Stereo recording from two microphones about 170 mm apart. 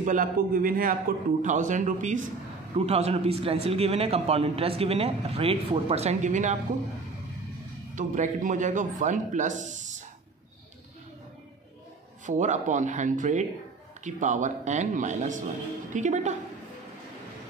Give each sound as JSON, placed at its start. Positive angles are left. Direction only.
{"t": 0.0, "sound": "a man's voice", "side_deg": -50}
{"t": 2.7, "sound": "a man's voice", "side_deg": -35}
{"t": 7.9, "sound": "a man's voice", "side_deg": -45}
{"t": 12.3, "sound": "a man's voice", "side_deg": -45}